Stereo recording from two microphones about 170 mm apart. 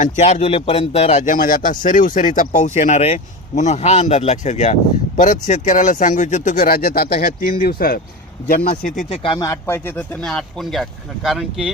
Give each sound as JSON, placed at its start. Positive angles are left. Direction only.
{"t": 0.0, "sound": "a man's voice", "side_deg": 40}
{"t": 9.0, "sound": "speech", "side_deg": 35}
{"t": 9.5, "sound": "speech", "side_deg": 15}